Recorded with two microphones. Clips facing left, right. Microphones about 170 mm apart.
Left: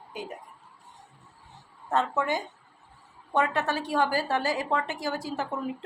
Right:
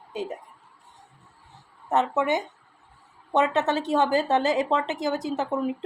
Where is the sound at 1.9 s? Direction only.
20° right (ahead or behind).